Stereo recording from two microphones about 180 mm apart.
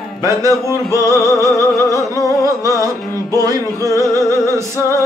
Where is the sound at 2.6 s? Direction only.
20° right (ahead or behind).